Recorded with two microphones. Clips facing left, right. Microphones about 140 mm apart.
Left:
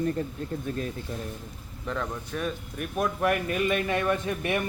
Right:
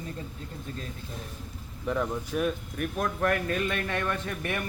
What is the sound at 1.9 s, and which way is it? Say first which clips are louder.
Speech: right 3 dB; 10° right (ahead or behind).